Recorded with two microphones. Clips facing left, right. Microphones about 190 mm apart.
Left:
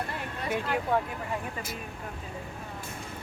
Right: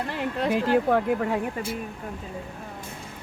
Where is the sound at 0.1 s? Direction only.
80° right.